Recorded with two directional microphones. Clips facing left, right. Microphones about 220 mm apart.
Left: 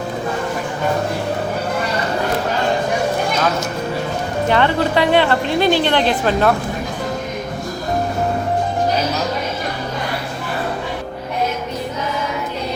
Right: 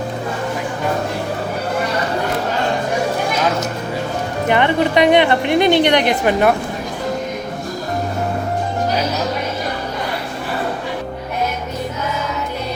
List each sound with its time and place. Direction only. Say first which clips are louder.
4.4 s a woman's voice: right 1 dB; 15° right (ahead or behind)